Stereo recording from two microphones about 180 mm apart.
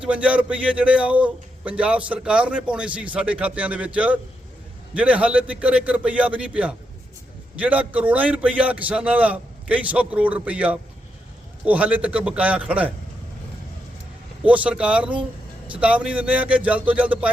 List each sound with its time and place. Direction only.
0.0 s a man's voice: 5° right (ahead or behind)
14.4 s a man's voice: 5° right (ahead or behind)